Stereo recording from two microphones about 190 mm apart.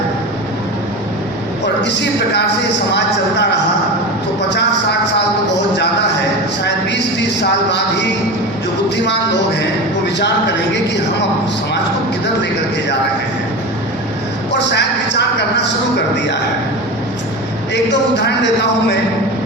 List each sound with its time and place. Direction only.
1.6 s speech: 65° left (ahead or behind)
5.5 s a sound: 65° left (ahead or behind)
6.7 s music: 65° left (ahead or behind)
14.7 s music: 65° left (ahead or behind)
18.2 s speech: 65° left (ahead or behind)